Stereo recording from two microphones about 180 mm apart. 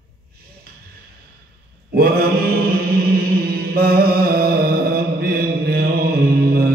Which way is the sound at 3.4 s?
60° right (ahead or behind).